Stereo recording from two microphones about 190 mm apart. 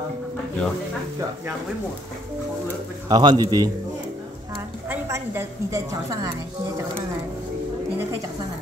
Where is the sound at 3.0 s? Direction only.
20° right (ahead or behind).